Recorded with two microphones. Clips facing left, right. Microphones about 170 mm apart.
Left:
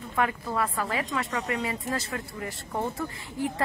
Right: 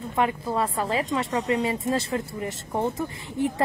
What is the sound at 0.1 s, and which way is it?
A woman's voice, 20° right (ahead or behind).